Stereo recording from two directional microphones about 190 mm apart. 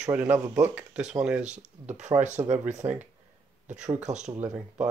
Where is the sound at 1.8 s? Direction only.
35° right (ahead or behind).